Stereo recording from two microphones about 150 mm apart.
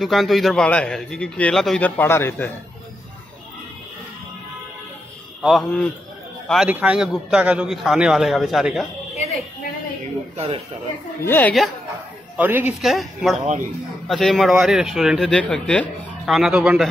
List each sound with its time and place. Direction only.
0.0 s a man's voice: centre (ahead or behind)
5.4 s a man's voice: centre (ahead or behind)
10.3 s speech: 40° right (ahead or behind)
11.2 s speech: 10° left (ahead or behind)
12.4 s speech: 10° right (ahead or behind)
12.8 s a man's voice: centre (ahead or behind)
16.3 s a man's voice: 5° right (ahead or behind)